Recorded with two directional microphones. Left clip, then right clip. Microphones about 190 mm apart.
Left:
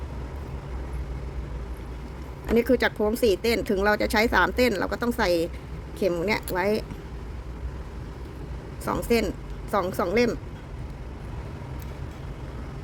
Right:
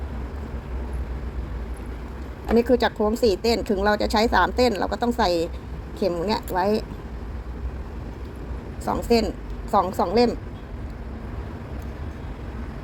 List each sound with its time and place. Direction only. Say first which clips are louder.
2.6 s speech: right 2 dB; 25° left (ahead or behind)
8.8 s speech: right 3 dB; 30° left (ahead or behind)